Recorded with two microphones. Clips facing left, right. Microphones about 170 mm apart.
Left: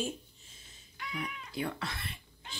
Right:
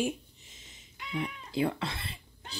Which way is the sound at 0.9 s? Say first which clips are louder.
Right 4 dB; 25° right (ahead or behind).